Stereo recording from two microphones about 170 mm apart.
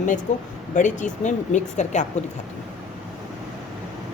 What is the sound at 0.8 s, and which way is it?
A woman's voice, 45° left (ahead or behind).